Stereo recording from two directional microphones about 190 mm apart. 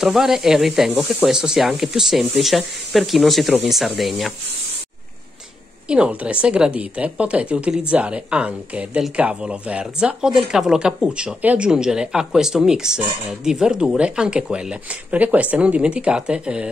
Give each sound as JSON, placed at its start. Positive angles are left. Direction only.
{"t": 0.0, "sound": "speech", "side_deg": 0}
{"t": 5.9, "sound": "speech", "side_deg": -5}